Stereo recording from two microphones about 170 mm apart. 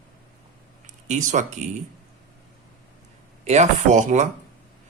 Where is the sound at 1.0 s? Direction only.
45° right (ahead or behind).